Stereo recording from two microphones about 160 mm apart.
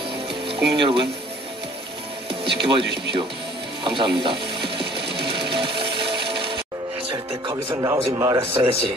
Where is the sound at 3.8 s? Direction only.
30° right (ahead or behind).